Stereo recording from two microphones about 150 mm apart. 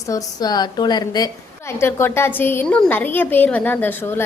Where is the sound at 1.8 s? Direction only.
15° left (ahead or behind).